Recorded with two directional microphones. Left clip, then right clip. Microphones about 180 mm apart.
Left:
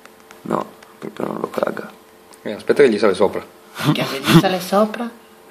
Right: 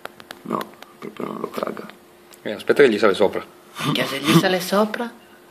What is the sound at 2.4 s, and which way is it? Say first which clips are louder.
Speech: left 1 dB; 5° right (ahead or behind).